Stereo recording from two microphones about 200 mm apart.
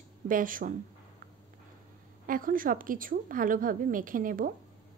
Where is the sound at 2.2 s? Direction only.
45° right (ahead or behind).